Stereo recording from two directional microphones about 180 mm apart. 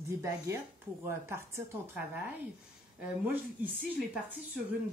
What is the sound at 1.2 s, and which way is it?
Speech, 15° right (ahead or behind).